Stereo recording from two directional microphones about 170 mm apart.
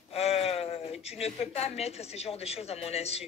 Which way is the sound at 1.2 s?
35° left (ahead or behind).